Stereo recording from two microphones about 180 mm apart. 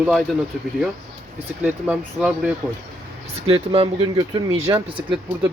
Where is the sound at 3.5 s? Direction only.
35° right (ahead or behind).